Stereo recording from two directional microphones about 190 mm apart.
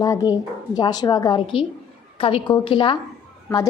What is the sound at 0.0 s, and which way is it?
A woman's voice, 20° left (ahead or behind).